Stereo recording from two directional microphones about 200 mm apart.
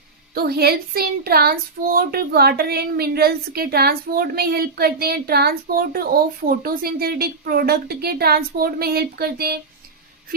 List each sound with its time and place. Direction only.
0.3 s speech: 50° right (ahead or behind)